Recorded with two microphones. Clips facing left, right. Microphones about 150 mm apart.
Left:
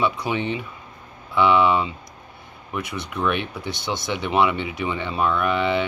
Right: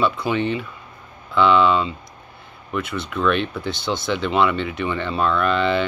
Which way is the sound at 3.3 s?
90° right.